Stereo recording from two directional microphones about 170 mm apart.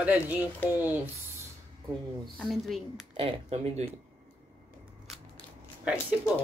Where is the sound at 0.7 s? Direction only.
10° right (ahead or behind).